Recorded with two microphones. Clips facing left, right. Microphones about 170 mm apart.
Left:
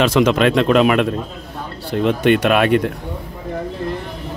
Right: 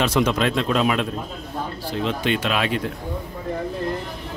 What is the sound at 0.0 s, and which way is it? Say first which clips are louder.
Speech: left 6 dB; 90° left.